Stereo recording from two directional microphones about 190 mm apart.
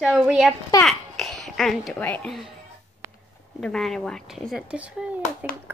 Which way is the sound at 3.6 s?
Centre (ahead or behind).